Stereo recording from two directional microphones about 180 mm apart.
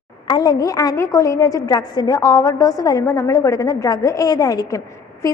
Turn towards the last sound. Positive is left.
turn(degrees=20)  # may be behind; listen again after turning